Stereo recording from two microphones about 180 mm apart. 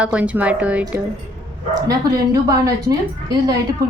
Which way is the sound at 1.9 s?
20° right (ahead or behind).